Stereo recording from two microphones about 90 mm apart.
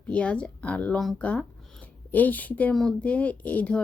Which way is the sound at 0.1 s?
15° left (ahead or behind).